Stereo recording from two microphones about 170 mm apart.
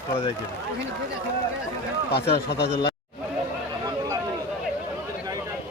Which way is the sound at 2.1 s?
75° left (ahead or behind).